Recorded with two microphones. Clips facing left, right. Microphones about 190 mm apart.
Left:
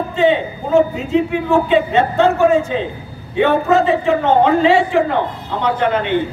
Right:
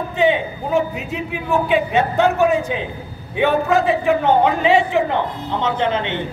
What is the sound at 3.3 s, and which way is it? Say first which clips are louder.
A man's voice: left 3 dB; 15° right (ahead or behind).